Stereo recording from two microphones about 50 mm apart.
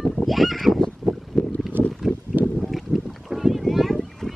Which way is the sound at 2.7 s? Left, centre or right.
Centre.